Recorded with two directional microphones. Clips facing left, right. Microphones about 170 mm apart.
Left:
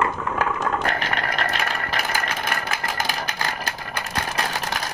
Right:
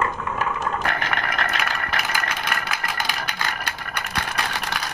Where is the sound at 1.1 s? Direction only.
30° left (ahead or behind).